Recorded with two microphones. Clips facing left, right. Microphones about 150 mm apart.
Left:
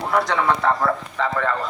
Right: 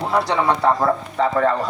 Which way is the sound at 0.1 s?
30° right (ahead or behind).